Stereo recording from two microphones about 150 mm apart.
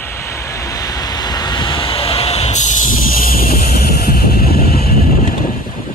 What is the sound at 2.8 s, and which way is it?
Vehicle, 70° left (ahead or behind).